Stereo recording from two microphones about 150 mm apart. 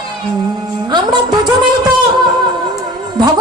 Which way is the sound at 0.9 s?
30° right (ahead or behind).